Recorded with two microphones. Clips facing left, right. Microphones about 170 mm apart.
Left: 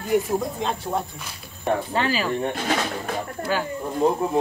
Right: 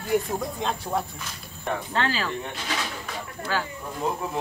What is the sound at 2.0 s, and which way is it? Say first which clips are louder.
Speech: left 3 dB; 10° left (ahead or behind).